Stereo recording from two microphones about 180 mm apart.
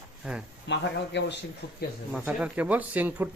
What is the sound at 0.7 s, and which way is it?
Speech, 70° left (ahead or behind).